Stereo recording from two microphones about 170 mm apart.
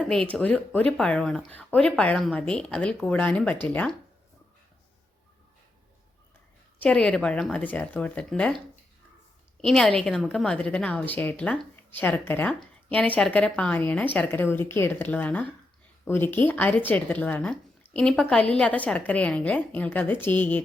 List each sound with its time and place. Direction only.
0.0 s speech: 5° left (ahead or behind)
6.7 s a woman's voice: 5° left (ahead or behind)